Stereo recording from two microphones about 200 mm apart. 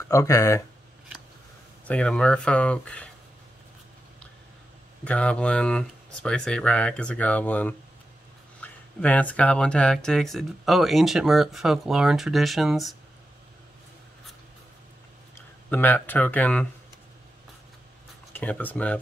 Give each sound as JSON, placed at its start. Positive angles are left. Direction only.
{"t": 0.1, "sound": "speech", "side_deg": 15}
{"t": 1.9, "sound": "speech", "side_deg": 5}
{"t": 5.0, "sound": "speech", "side_deg": 5}
{"t": 15.7, "sound": "speech", "side_deg": 10}
{"t": 18.3, "sound": "speech", "side_deg": 10}